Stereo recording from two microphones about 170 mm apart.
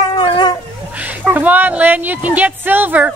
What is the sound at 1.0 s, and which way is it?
Speech, 10° right (ahead or behind).